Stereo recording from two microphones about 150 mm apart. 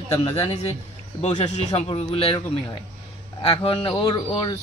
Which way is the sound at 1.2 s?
50° left (ahead or behind).